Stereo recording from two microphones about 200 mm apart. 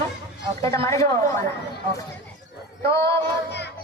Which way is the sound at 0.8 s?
15° left (ahead or behind).